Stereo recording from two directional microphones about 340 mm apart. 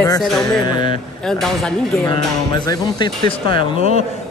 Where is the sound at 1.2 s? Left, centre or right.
Centre.